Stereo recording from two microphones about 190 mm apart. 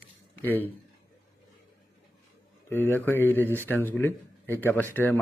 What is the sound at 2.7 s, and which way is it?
Speech, 10° left (ahead or behind).